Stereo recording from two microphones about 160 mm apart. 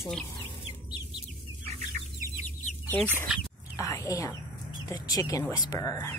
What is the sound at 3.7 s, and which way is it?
Speech, 20° left (ahead or behind).